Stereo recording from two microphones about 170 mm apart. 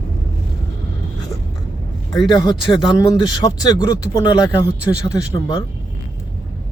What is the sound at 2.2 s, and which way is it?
Speech, 25° left (ahead or behind).